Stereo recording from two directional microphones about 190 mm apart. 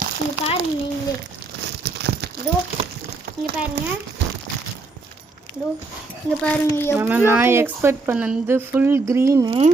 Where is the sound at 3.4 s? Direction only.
60° right (ahead or behind).